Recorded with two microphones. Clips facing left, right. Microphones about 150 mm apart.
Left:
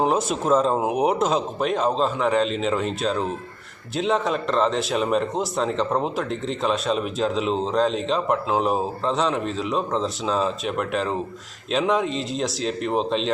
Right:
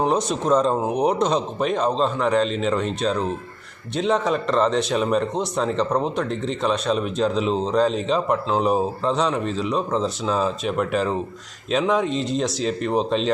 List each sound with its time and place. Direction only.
0.0 s speech: 5° left (ahead or behind)